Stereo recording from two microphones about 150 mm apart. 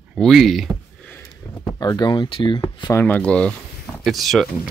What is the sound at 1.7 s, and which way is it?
Speech, 25° left (ahead or behind).